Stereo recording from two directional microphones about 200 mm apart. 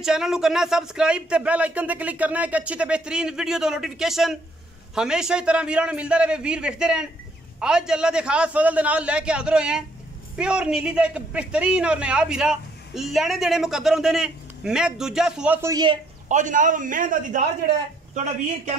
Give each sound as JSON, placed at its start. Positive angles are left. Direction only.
{"t": 0.0, "sound": "a man's voice", "side_deg": -5}
{"t": 16.3, "sound": "a man's voice", "side_deg": -40}